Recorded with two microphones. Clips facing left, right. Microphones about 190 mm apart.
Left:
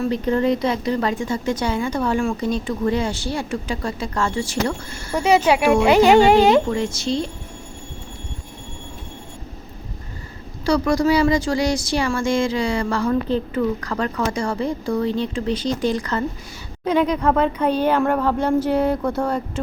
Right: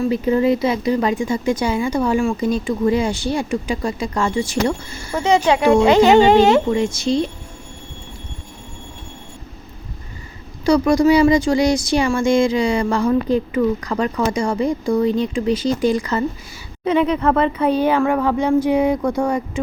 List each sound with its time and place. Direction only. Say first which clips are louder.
0.0 s speech: right 3 dB; 5° right (ahead or behind)
5.1 s speech: even; 10° left (ahead or behind)
5.6 s speech: right 3 dB; 20° right (ahead or behind)
5.9 s speech: even; 10° left (ahead or behind)
6.7 s speech: right 4 dB; 15° right (ahead or behind)
10.7 s speech: right 4 dB; 15° right (ahead or behind)